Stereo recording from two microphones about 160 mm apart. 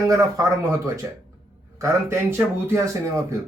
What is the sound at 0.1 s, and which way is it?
Speech, 20° right (ahead or behind).